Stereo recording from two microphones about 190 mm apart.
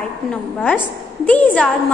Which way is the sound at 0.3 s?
5° left (ahead or behind).